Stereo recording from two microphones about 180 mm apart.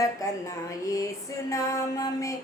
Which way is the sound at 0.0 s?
20° left (ahead or behind).